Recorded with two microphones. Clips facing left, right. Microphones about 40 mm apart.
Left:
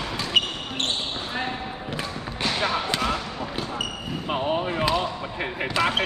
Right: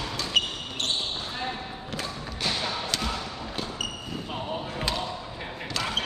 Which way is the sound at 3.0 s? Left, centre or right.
Left.